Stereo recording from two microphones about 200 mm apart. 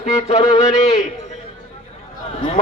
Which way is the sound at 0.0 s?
35° left (ahead or behind).